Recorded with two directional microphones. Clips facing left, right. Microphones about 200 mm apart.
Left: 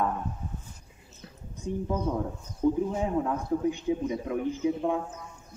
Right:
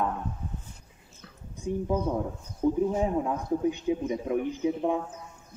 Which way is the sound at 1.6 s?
10° right (ahead or behind).